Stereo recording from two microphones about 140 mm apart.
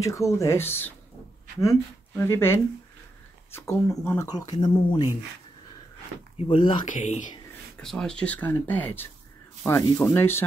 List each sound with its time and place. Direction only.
0.0 s speech: 20° left (ahead or behind)
6.3 s speech: 40° left (ahead or behind)
6.9 s speech: 60° left (ahead or behind)
7.8 s speech: 5° left (ahead or behind)
10.1 s speech: 15° left (ahead or behind)